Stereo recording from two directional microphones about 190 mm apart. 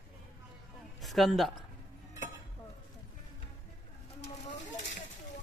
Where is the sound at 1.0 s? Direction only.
Centre (ahead or behind).